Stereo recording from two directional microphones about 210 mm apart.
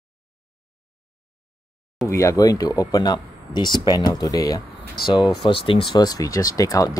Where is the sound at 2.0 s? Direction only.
15° left (ahead or behind).